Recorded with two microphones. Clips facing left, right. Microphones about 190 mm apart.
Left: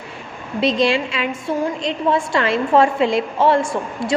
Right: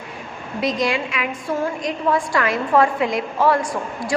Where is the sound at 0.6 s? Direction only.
30° left (ahead or behind).